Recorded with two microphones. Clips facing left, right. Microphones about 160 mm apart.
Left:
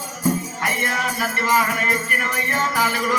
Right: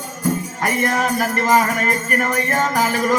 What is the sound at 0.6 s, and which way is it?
Music, 45° right (ahead or behind).